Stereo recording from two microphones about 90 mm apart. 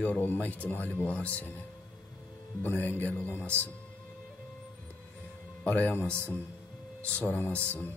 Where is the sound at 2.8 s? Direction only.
20° left (ahead or behind).